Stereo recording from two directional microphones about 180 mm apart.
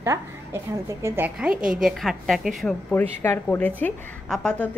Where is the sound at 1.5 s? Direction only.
50° right (ahead or behind).